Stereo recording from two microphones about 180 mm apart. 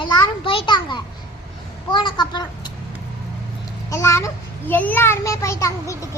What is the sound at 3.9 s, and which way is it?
A child's voice, 15° left (ahead or behind).